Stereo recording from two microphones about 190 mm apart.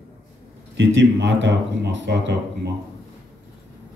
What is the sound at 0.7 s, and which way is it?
A man's voice, 65° right (ahead or behind).